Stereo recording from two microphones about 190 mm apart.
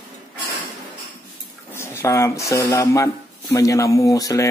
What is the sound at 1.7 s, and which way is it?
Speech, 15° left (ahead or behind).